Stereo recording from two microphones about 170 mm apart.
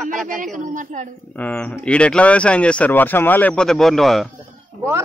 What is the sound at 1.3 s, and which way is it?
Speech, 10° left (ahead or behind).